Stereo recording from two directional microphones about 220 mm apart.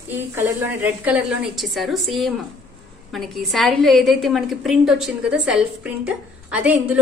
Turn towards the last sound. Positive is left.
turn(degrees=-5)  # may be behind; listen again after turning